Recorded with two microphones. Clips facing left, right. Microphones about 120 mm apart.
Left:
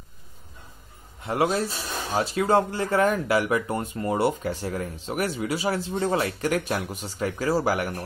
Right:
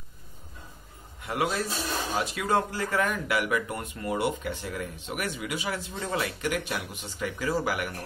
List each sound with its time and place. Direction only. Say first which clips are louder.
1.2 s speech: left 5 dB; 30° left (ahead or behind)